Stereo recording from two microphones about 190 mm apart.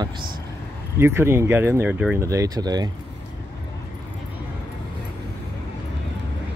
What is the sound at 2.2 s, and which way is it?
Speech, 20° right (ahead or behind).